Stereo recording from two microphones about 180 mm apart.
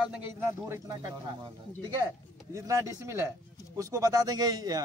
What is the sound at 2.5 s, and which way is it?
A man's voice, 15° right (ahead or behind).